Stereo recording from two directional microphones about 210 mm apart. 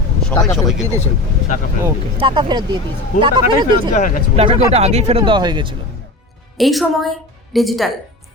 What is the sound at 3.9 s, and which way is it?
Speech, 35° left (ahead or behind).